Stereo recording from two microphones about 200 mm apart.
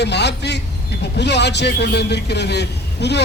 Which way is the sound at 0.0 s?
60° left (ahead or behind).